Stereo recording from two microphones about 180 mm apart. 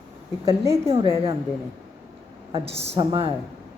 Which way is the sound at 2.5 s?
35° right (ahead or behind).